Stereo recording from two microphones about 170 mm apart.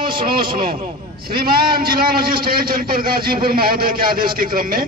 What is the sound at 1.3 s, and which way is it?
A man's voice, 65° right (ahead or behind).